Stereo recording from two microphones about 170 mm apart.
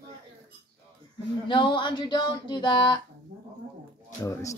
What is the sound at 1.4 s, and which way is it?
Speech, 30° left (ahead or behind).